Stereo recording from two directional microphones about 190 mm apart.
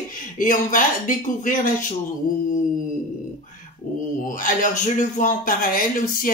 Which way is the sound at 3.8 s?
45° left (ahead or behind).